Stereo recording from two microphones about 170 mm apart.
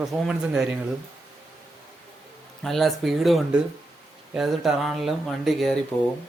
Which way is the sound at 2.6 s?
Centre (ahead or behind).